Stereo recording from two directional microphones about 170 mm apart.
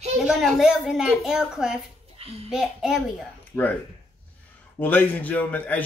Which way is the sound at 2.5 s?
5° right (ahead or behind).